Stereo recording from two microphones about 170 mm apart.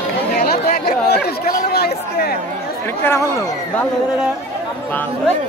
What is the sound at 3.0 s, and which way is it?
Speech, 15° left (ahead or behind).